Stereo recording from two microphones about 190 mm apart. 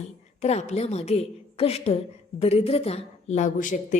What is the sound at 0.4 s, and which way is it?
A woman's voice, 35° left (ahead or behind).